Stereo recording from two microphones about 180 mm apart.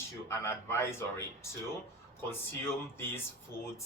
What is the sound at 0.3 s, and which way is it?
Speech, 15° left (ahead or behind).